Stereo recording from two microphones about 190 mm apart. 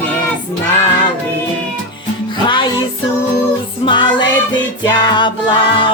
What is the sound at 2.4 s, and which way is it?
Music, 25° left (ahead or behind).